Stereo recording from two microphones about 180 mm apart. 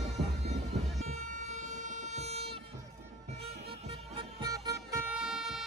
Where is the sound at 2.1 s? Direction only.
35° right (ahead or behind).